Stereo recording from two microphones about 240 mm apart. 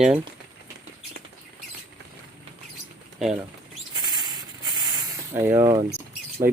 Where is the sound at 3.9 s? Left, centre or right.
Centre.